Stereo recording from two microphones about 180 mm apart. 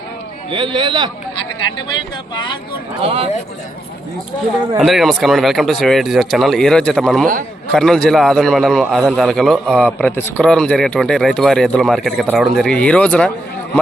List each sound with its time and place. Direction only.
0.5 s a man's voice: 25° right (ahead or behind)
3.0 s speech: 30° right (ahead or behind)
4.8 s a man's voice: centre (ahead or behind)